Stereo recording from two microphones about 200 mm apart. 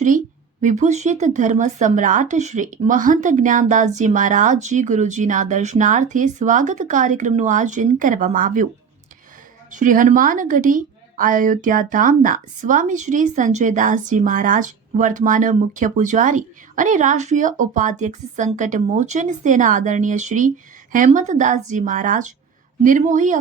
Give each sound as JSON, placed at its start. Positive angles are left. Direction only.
{"t": 0.6, "sound": "a woman's voice", "side_deg": -35}
{"t": 9.6, "sound": "a woman's voice", "side_deg": -40}